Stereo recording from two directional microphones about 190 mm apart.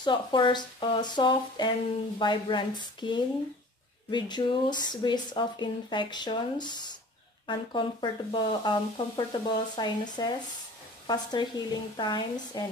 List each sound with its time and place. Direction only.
0.0 s speech: 25° left (ahead or behind)